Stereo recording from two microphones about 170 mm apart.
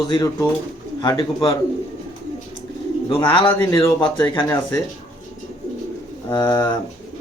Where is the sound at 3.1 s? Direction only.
30° left (ahead or behind).